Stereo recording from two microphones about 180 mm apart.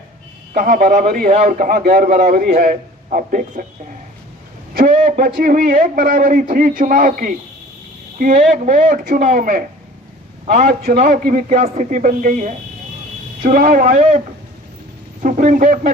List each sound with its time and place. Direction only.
0.5 s a man's voice: 50° right (ahead or behind)
4.8 s a man's voice: 45° right (ahead or behind)
15.2 s a man's voice: 45° right (ahead or behind)